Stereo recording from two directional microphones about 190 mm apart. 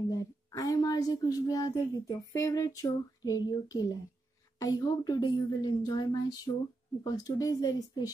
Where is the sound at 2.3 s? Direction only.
15° left (ahead or behind).